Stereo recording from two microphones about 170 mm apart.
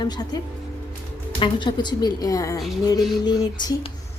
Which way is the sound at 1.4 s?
25° left (ahead or behind).